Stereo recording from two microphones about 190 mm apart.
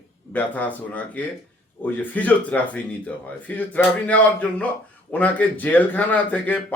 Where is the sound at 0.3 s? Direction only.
10° left (ahead or behind).